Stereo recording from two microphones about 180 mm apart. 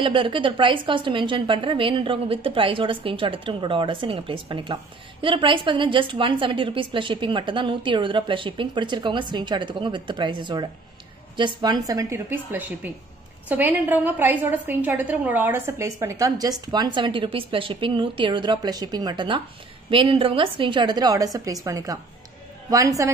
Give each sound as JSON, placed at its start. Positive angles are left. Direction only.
{"t": 0.0, "sound": "a woman's voice", "side_deg": -30}